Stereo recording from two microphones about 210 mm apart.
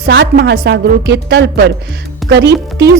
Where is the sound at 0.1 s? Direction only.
55° right (ahead or behind).